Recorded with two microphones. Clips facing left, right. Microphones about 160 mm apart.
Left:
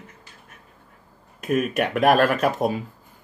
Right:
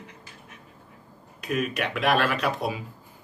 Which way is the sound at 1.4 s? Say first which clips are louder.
Left 5 dB; 50° left (ahead or behind).